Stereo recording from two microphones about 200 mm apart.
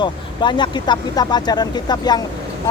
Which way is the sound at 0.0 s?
20° left (ahead or behind).